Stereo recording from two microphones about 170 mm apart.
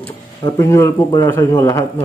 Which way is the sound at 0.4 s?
20° left (ahead or behind).